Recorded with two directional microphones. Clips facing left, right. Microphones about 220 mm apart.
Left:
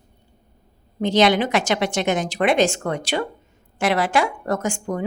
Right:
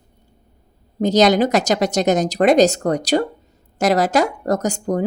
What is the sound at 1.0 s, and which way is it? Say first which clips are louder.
Speech: right 3 dB; 40° right (ahead or behind).